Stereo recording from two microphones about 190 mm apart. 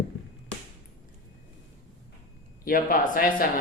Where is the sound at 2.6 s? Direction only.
45° left (ahead or behind).